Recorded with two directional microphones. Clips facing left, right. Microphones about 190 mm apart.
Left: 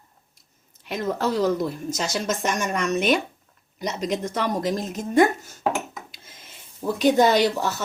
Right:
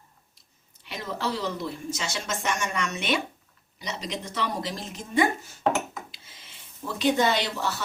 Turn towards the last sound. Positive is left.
turn(degrees=45)  # may be behind; listen again after turning